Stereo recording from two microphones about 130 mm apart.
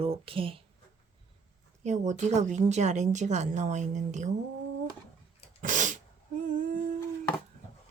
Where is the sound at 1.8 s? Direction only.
65° right (ahead or behind).